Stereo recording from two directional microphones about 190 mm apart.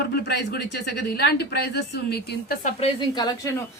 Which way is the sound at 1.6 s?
60° left (ahead or behind).